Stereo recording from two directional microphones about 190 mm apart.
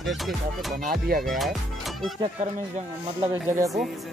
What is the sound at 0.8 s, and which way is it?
Speech, 50° right (ahead or behind).